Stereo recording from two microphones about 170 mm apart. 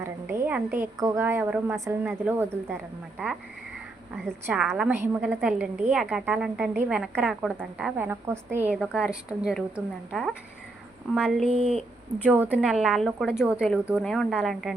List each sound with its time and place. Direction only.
0.0 s a woman's voice: 15° right (ahead or behind)
4.4 s a woman's voice: 5° right (ahead or behind)
11.5 s speech: 35° right (ahead or behind)
12.2 s a woman's voice: 10° right (ahead or behind)